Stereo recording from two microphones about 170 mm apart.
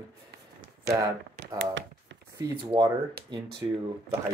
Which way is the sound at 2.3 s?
20° right (ahead or behind).